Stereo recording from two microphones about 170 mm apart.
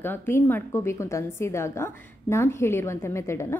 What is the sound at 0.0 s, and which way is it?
A woman's voice, 10° left (ahead or behind).